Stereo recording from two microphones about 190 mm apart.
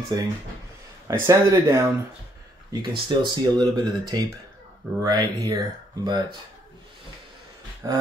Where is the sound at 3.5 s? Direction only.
20° right (ahead or behind).